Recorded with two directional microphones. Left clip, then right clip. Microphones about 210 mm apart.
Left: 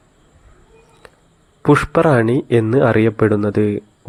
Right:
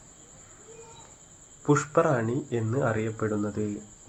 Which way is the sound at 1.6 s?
40° left (ahead or behind).